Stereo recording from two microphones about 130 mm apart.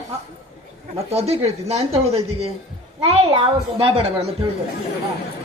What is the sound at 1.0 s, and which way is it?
Speech, 50° right (ahead or behind).